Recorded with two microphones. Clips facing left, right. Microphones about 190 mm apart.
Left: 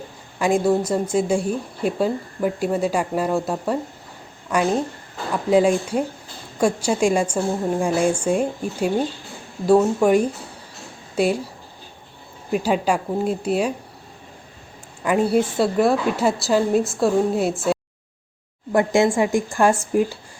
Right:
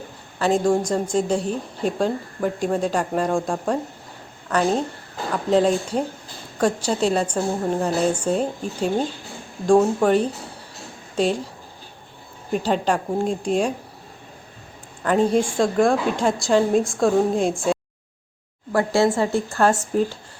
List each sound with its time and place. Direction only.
0.3 s a woman's voice: 10° left (ahead or behind)
10.0 s speech: 10° left (ahead or behind)
12.5 s speech: 10° left (ahead or behind)
15.0 s a woman's voice: 10° left (ahead or behind)
18.7 s speech: 20° left (ahead or behind)